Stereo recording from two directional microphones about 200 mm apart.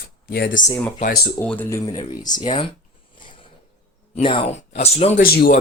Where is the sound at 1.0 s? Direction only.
50° left (ahead or behind).